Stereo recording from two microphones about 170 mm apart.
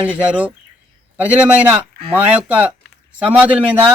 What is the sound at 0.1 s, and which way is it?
Speech, 10° right (ahead or behind).